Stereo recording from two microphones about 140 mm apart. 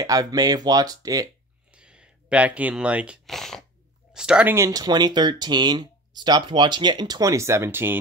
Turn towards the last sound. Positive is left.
turn(degrees=-15)  # may be behind; listen again after turning